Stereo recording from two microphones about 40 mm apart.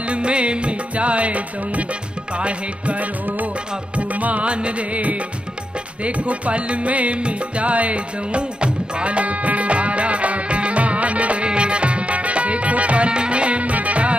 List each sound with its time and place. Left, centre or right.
0.1 s music: right